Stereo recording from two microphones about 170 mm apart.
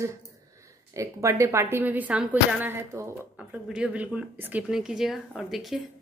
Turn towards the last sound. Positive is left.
turn(degrees=0)  # may be behind; listen again after turning